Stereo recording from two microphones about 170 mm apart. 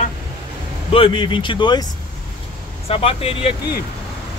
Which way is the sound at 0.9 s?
30° left (ahead or behind).